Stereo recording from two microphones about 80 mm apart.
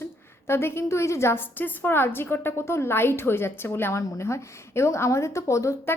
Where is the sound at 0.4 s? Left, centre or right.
Left.